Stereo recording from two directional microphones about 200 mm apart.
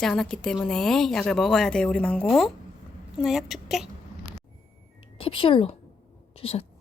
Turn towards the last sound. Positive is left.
turn(degrees=30)  # may be behind; listen again after turning